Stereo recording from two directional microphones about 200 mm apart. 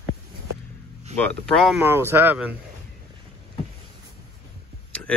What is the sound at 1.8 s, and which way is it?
Speech, 10° right (ahead or behind).